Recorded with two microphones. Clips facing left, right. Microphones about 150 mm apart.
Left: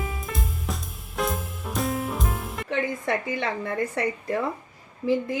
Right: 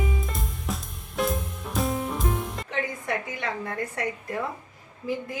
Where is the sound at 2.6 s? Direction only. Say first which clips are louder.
Left 4 dB; 70° left (ahead or behind).